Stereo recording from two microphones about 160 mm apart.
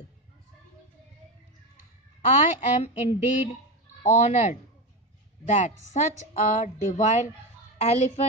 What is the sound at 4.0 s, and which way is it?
A woman's voice, 45° left (ahead or behind).